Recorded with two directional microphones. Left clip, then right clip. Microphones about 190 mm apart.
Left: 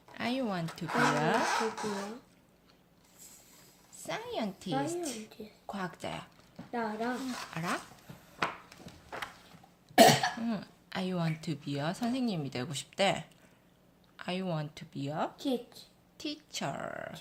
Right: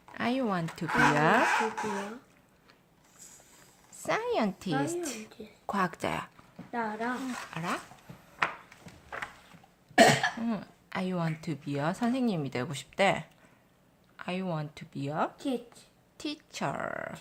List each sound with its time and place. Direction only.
0.1 s a sound: 25° right (ahead or behind)
0.9 s speech: centre (ahead or behind)
3.9 s a woman's voice: 35° right (ahead or behind)
4.8 s speech: centre (ahead or behind)
5.0 s a child's voice: 40° right (ahead or behind)
6.7 s speech: centre (ahead or behind)
8.4 s a sound: centre (ahead or behind)
9.9 s cough: 5° left (ahead or behind)
10.4 s speech: 10° right (ahead or behind)
15.4 s speech: 5° right (ahead or behind)
16.1 s speech: 20° right (ahead or behind)